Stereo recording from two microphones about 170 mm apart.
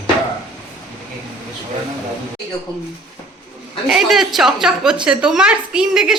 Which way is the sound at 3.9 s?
Centre (ahead or behind).